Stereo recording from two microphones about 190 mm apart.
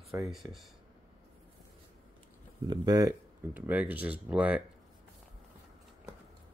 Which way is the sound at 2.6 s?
20° right (ahead or behind).